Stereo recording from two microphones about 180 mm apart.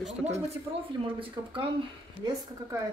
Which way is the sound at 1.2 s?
30° right (ahead or behind).